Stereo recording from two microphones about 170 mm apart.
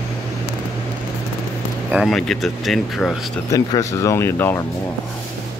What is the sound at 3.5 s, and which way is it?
Speech, 20° left (ahead or behind).